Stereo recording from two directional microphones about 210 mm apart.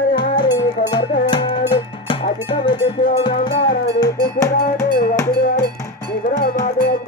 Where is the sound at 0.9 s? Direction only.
20° left (ahead or behind).